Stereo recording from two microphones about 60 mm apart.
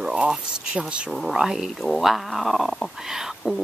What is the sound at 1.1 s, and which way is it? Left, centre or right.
Speech, centre.